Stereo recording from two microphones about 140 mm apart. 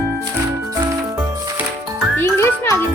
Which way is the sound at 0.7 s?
25° right (ahead or behind).